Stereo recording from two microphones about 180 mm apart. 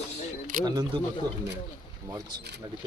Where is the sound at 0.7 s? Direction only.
25° right (ahead or behind).